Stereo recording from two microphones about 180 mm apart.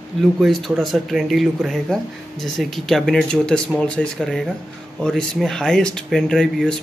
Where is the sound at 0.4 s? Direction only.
Centre (ahead or behind).